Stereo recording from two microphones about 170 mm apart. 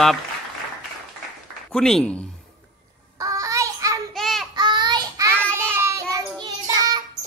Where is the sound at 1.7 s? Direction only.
5° left (ahead or behind).